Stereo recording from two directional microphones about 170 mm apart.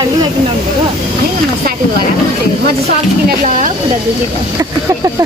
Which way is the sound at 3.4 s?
50° right (ahead or behind).